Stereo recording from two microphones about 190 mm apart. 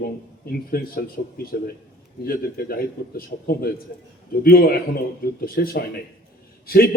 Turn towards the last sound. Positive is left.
turn(degrees=50)  # may be behind; listen again after turning